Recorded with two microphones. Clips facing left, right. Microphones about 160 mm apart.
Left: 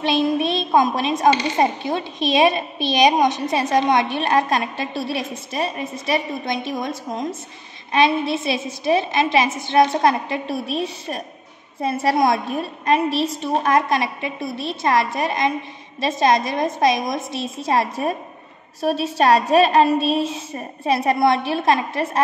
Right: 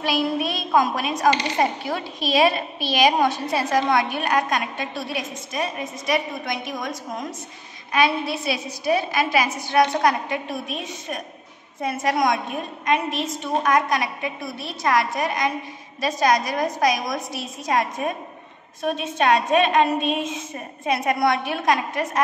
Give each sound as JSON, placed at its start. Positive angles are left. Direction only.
{"t": 0.0, "sound": "a child's voice", "side_deg": 25}